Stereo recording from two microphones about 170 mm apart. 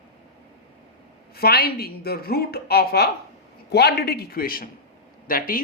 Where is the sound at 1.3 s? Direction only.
65° left (ahead or behind).